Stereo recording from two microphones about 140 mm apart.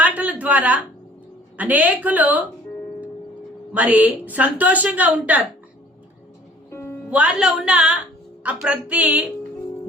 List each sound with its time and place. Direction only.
0.0 s a sound: 10° right (ahead or behind)
1.5 s a woman's voice: 10° right (ahead or behind)
3.7 s a woman's voice: 10° right (ahead or behind)
6.7 s music: 20° left (ahead or behind)
7.1 s a woman's voice: 10° right (ahead or behind)